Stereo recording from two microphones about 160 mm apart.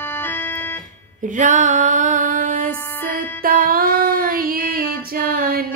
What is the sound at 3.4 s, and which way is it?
Female singing, 65° right (ahead or behind).